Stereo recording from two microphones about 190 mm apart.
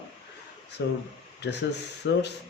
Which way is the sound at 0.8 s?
65° left (ahead or behind).